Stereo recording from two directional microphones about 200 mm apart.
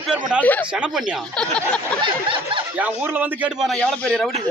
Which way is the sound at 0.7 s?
5° right (ahead or behind).